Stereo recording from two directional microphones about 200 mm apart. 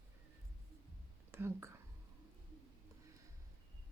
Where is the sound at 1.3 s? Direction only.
10° right (ahead or behind).